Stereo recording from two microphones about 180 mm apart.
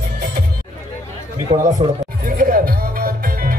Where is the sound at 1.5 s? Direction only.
35° right (ahead or behind).